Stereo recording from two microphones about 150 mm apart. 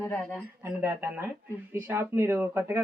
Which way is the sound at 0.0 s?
15° left (ahead or behind).